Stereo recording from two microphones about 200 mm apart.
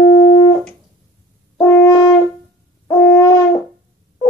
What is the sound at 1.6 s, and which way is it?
French horn, 20° left (ahead or behind).